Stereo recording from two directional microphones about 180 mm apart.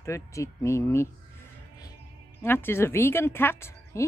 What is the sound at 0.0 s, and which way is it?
A woman's voice, 15° left (ahead or behind).